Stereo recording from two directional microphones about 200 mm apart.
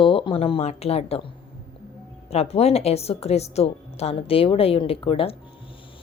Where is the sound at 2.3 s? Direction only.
30° left (ahead or behind).